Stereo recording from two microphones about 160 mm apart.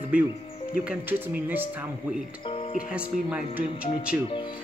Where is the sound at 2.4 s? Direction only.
35° left (ahead or behind).